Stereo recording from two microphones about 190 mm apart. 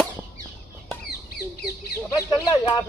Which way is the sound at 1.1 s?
55° left (ahead or behind).